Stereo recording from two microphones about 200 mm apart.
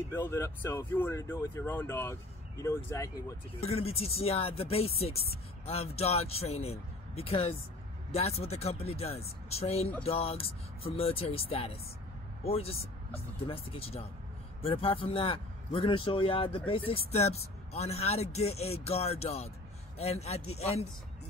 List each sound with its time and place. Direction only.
0.1 s speech: 10° left (ahead or behind)
3.6 s speech: 30° left (ahead or behind)